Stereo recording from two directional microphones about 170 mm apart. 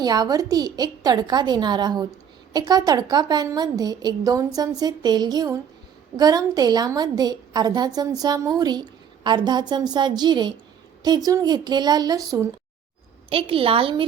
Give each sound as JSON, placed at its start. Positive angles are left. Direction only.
{"t": 0.0, "sound": "a woman's voice", "side_deg": -25}
{"t": 13.3, "sound": "a woman's voice", "side_deg": -35}